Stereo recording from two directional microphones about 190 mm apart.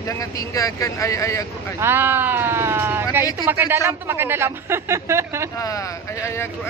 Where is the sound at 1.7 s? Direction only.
10° right (ahead or behind).